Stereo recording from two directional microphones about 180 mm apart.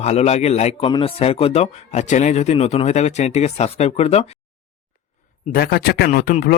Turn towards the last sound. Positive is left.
turn(degrees=55)  # may be behind; listen again after turning